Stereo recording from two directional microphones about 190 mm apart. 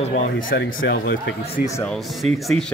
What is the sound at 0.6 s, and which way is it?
Speech, 80° left.